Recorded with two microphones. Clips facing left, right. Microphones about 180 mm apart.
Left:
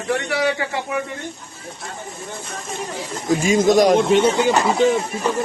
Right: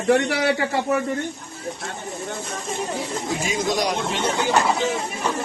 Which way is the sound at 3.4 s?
50° left (ahead or behind).